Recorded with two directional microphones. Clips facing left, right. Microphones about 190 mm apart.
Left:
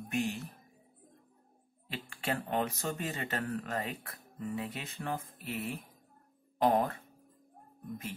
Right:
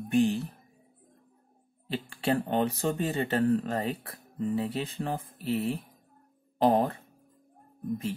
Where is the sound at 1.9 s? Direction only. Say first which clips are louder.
Right 8 dB; 35° right (ahead or behind).